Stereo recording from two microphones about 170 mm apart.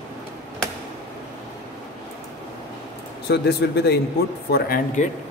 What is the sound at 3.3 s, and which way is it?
Speech, 75° left (ahead or behind).